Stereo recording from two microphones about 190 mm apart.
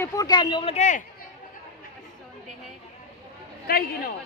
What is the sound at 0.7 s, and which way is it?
Speech, 40° left (ahead or behind).